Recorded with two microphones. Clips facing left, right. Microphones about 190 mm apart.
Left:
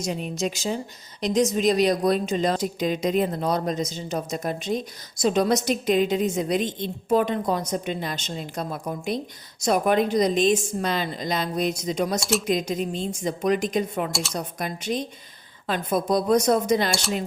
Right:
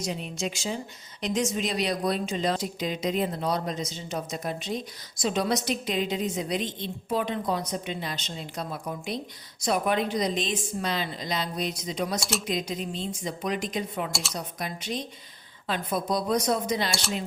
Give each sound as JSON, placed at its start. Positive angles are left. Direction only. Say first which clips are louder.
{"t": 0.0, "sound": "a woman's voice", "louder": "left 4 dB", "side_deg": 45}
{"t": 14.1, "sound": "speech", "louder": "left 5 dB", "side_deg": 0}
{"t": 14.3, "sound": "a woman's voice", "louder": "left 4 dB", "side_deg": 50}